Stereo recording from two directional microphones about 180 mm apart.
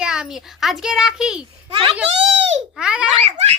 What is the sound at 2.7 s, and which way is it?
Speech, 5° right (ahead or behind).